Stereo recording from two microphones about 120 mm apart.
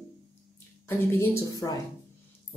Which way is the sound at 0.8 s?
20° left (ahead or behind).